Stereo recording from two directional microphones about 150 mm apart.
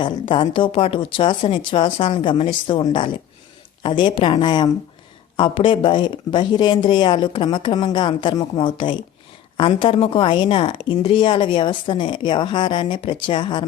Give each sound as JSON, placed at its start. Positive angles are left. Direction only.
{"t": 0.0, "sound": "a woman's voice", "side_deg": 35}